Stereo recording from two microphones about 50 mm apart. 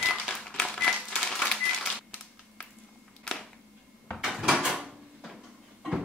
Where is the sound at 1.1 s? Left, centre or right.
Centre.